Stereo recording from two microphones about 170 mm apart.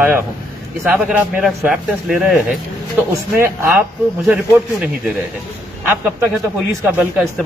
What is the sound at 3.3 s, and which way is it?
Speech, 15° right (ahead or behind).